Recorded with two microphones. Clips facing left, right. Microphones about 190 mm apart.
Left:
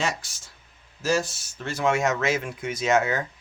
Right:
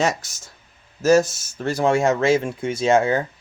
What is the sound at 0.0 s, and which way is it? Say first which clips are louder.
Speech: right 7 dB; 45° right (ahead or behind).